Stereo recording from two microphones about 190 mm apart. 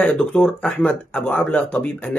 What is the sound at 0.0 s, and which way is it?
Speech, 5° left (ahead or behind).